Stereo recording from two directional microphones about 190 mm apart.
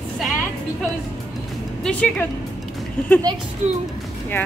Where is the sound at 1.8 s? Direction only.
5° left (ahead or behind).